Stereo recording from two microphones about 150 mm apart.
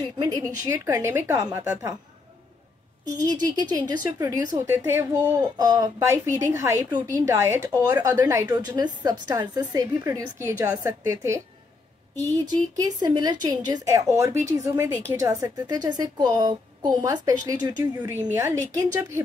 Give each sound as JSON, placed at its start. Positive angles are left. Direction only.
{"t": 0.2, "sound": "a woman's voice", "side_deg": -20}
{"t": 3.3, "sound": "a woman's voice", "side_deg": -30}
{"t": 5.4, "sound": "a woman's voice", "side_deg": -25}